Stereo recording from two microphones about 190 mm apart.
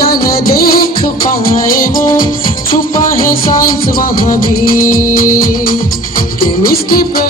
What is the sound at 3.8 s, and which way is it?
Music, 50° left (ahead or behind).